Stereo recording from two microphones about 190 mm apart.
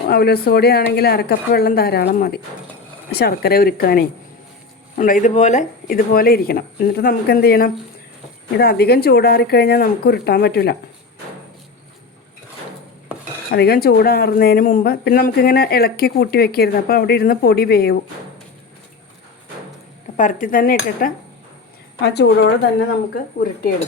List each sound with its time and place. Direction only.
0.1 s speech: 55° left (ahead or behind)
13.5 s speech: 55° left (ahead or behind)
20.1 s speech: 45° left (ahead or behind)
22.0 s speech: 65° left (ahead or behind)
23.1 s speech: 50° left (ahead or behind)